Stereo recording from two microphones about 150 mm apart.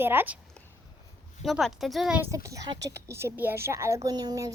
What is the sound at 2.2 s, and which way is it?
A woman's voice, 20° right (ahead or behind).